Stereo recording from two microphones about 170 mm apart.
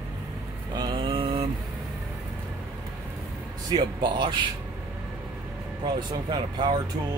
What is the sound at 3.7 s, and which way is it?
Speech, 25° right (ahead or behind).